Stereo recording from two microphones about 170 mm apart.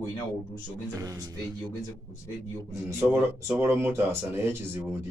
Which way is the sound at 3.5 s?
15° right (ahead or behind).